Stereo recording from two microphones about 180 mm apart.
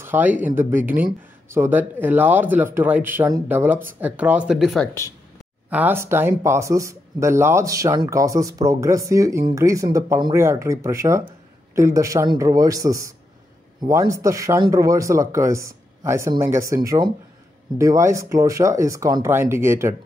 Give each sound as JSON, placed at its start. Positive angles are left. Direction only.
{"t": 0.0, "sound": "speech", "side_deg": -10}